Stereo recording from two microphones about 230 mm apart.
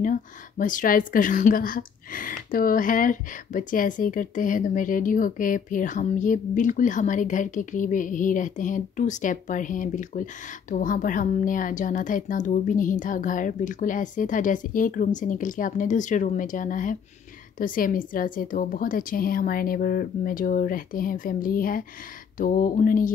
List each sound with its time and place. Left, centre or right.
0.0 s a woman's voice: left